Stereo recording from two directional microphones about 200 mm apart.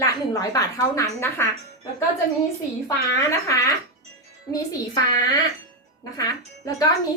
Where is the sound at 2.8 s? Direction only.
15° left (ahead or behind).